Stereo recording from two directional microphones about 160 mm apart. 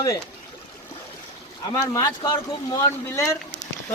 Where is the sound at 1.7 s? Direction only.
25° left (ahead or behind).